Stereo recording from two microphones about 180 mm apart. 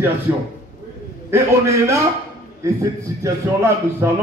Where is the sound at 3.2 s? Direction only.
15° right (ahead or behind).